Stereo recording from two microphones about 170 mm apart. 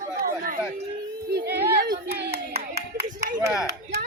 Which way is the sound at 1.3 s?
70° right (ahead or behind).